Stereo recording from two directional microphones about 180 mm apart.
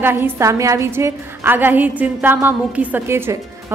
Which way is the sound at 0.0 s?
10° right (ahead or behind).